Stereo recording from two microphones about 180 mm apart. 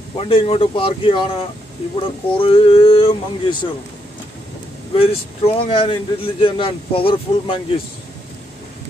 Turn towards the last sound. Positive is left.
turn(degrees=30)  # may be behind; listen again after turning